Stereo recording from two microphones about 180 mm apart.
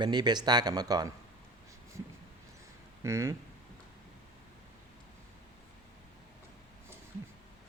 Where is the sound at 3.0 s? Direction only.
15° right (ahead or behind).